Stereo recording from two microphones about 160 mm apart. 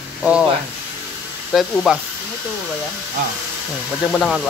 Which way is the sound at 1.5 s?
Centre (ahead or behind).